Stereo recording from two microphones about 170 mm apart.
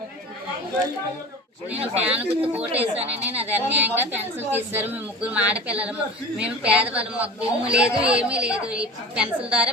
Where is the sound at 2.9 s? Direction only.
35° right (ahead or behind).